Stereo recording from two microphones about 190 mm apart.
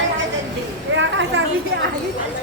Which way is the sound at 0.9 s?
75° right (ahead or behind).